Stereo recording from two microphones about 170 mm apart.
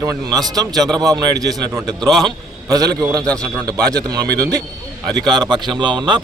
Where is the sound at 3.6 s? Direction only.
20° right (ahead or behind).